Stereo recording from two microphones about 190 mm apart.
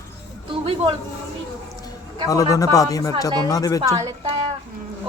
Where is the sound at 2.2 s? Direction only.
15° left (ahead or behind).